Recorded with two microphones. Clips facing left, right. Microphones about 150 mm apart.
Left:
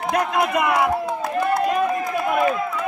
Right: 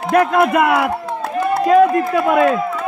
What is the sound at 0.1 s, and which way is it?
Speech, 55° right (ahead or behind).